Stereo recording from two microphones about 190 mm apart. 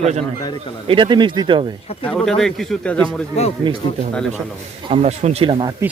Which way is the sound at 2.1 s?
Centre (ahead or behind).